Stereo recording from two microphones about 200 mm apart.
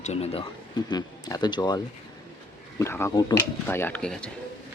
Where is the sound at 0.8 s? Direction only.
20° left (ahead or behind).